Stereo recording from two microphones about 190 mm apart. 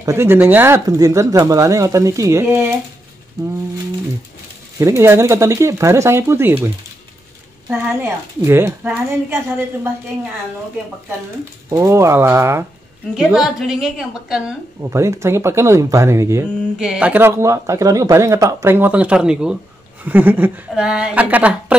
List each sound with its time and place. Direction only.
0.0 s speech: 15° right (ahead or behind)
4.7 s speech: 15° right (ahead or behind)
7.7 s speech: 15° right (ahead or behind)
11.7 s speech: 15° right (ahead or behind)
13.1 s a woman's voice: centre (ahead or behind)
14.8 s speech: 15° right (ahead or behind)
16.7 s speech: 5° right (ahead or behind)